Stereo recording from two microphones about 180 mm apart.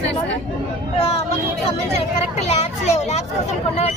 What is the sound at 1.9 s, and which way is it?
Speech, 35° left (ahead or behind).